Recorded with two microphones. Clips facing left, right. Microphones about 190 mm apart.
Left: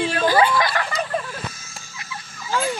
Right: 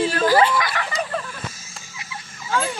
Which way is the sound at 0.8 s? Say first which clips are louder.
Left 2 dB; 45° left (ahead or behind).